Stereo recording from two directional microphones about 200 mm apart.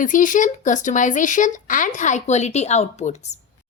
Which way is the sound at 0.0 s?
40° left (ahead or behind).